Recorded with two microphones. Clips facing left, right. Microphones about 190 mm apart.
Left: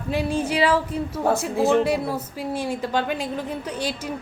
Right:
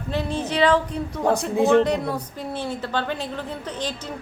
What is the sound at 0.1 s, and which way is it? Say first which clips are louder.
A woman's voice: left 2 dB; 10° left (ahead or behind).